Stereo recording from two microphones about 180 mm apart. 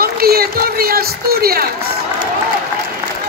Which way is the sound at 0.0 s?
60° right (ahead or behind).